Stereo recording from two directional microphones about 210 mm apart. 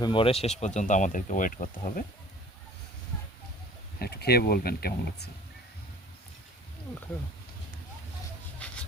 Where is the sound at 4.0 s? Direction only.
50° left (ahead or behind).